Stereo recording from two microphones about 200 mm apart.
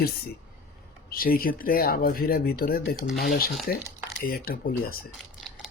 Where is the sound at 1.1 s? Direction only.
45° left (ahead or behind).